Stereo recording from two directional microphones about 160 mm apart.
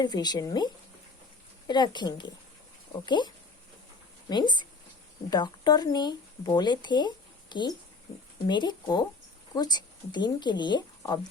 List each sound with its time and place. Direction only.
0.0 s speech: 25° left (ahead or behind)